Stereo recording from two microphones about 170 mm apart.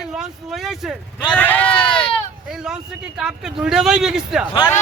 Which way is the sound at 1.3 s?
10° left (ahead or behind).